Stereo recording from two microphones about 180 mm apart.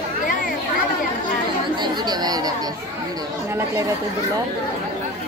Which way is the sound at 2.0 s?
20° right (ahead or behind).